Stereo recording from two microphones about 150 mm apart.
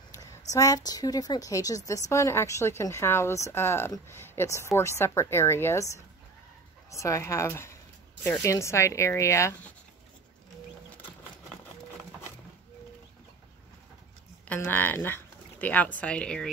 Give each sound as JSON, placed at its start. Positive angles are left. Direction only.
{"t": 0.1, "sound": "a woman's voice", "side_deg": 20}
{"t": 14.7, "sound": "speech", "side_deg": 10}